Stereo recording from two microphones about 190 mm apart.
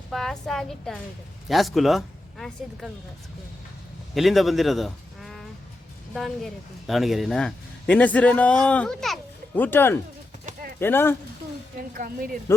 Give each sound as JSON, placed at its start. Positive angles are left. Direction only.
{"t": 0.1, "sound": "speech", "side_deg": 0}
{"t": 4.1, "sound": "a man's voice", "side_deg": 0}
{"t": 11.9, "sound": "a woman's voice", "side_deg": -45}